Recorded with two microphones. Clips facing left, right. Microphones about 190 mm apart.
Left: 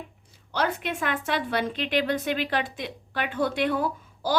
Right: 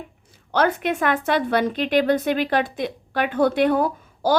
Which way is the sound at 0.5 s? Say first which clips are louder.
Right 7 dB; 55° right (ahead or behind).